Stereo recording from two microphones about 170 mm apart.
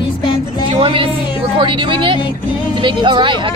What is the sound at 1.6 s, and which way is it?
Speech, 30° right (ahead or behind).